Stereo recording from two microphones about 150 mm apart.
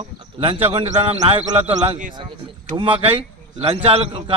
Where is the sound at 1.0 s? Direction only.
45° right (ahead or behind).